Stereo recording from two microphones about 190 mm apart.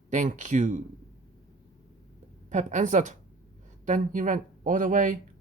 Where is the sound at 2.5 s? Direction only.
40° right (ahead or behind).